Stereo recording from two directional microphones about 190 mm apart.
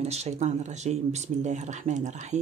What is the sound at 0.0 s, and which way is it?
Speech, 35° right (ahead or behind).